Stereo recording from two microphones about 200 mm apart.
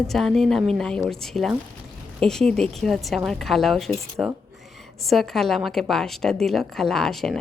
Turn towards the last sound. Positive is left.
turn(degrees=0)  # may be behind; listen again after turning